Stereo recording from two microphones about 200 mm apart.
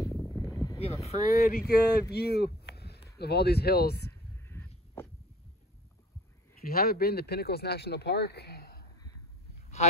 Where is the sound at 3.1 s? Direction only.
55° left (ahead or behind).